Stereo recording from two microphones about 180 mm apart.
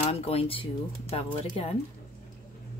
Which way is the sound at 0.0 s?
35° left (ahead or behind).